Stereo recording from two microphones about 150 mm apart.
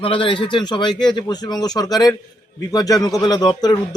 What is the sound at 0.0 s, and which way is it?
Speech, 35° left (ahead or behind).